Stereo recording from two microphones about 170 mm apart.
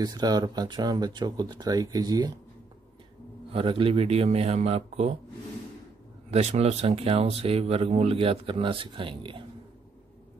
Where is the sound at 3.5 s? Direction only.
30° right (ahead or behind).